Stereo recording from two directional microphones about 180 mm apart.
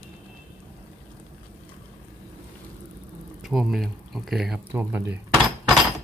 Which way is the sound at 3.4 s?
Centre (ahead or behind).